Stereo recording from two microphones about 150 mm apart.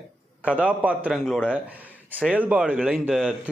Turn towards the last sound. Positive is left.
turn(degrees=-5)  # may be behind; listen again after turning